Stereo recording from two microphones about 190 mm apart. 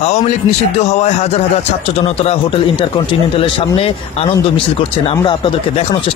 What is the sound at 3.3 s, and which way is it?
Speech, 25° left (ahead or behind).